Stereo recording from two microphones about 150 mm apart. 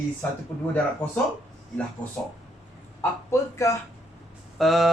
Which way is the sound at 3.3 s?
20° left (ahead or behind).